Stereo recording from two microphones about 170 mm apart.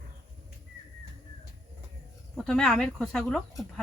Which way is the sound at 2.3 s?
5° left (ahead or behind).